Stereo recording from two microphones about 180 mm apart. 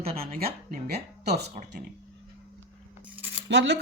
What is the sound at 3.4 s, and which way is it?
Speech, 75° right (ahead or behind).